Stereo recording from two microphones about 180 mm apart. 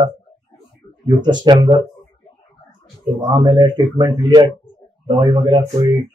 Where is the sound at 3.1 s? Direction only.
25° right (ahead or behind).